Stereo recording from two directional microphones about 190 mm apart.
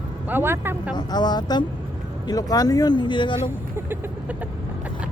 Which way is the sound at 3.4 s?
10° right (ahead or behind).